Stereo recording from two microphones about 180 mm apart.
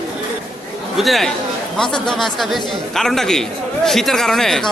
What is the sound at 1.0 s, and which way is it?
A man's voice, centre (ahead or behind).